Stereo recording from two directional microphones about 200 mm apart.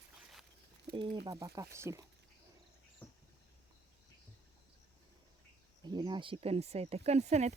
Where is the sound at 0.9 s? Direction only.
45° right (ahead or behind).